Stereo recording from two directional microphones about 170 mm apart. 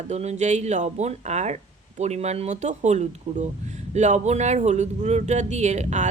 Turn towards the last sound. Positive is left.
turn(degrees=-45)  # may be behind; listen again after turning